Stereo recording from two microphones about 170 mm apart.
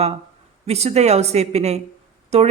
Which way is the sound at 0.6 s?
40° right (ahead or behind).